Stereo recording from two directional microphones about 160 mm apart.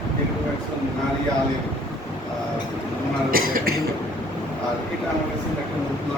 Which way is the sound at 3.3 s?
65° right (ahead or behind).